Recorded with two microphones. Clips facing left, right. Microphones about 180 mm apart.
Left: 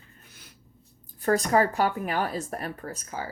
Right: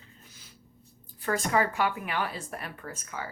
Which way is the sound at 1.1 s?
40° left (ahead or behind).